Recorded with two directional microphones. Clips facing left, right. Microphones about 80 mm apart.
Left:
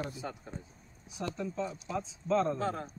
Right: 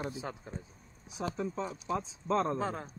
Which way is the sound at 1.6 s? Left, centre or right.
Right.